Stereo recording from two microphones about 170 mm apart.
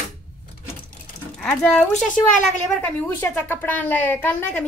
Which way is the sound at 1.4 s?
5° left (ahead or behind).